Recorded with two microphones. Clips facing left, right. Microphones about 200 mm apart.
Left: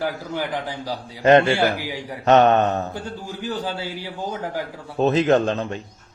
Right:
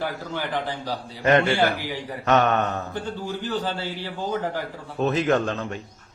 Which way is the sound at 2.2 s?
25° left (ahead or behind).